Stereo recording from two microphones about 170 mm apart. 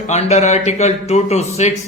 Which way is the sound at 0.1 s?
40° left (ahead or behind).